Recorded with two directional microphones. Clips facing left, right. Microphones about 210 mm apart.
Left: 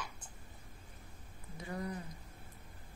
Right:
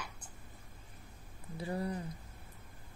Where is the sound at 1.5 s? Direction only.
30° right (ahead or behind).